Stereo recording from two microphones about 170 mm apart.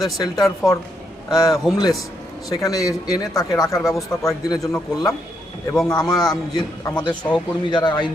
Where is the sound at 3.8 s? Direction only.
Centre (ahead or behind).